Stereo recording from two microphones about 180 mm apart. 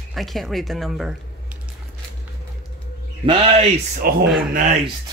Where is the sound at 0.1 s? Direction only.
Centre (ahead or behind).